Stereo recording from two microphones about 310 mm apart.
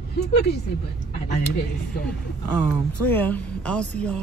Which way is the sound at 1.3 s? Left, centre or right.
Left.